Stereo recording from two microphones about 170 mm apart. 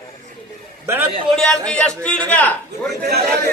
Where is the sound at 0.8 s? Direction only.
10° right (ahead or behind).